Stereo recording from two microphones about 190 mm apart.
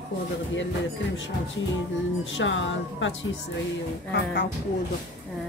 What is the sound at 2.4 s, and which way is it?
Speech, 80° left.